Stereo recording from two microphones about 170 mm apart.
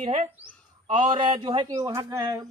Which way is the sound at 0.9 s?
30° right (ahead or behind).